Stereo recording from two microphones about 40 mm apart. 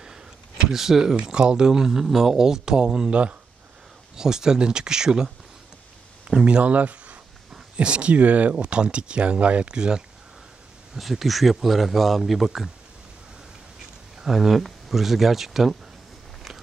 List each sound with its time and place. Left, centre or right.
0.7 s speech: centre
1.1 s speech: right
1.7 s speech: centre
4.2 s speech: centre
6.4 s speech: right
9.8 s speech: centre
11.0 s speech: centre
14.2 s speech: centre